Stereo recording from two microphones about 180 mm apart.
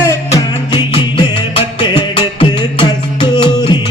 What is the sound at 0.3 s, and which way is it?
Music, 25° left (ahead or behind).